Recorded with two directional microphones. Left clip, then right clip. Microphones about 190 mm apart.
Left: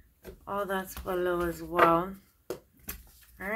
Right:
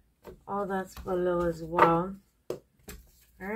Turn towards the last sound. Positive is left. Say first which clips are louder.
# left 2 dB
turn(degrees=30)  # may be behind; listen again after turning